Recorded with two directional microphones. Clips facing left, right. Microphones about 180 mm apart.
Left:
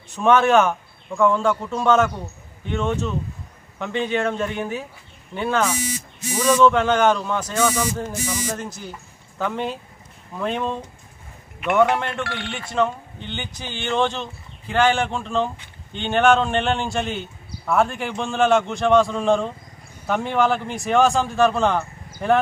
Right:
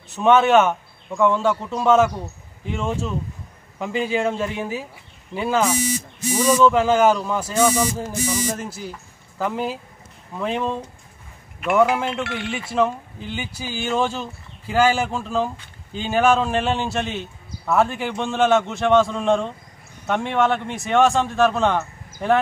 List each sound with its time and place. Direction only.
0.1 s a man's voice: 5° right (ahead or behind)